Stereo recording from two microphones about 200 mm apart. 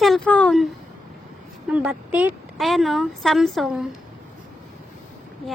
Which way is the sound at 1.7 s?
5° right (ahead or behind).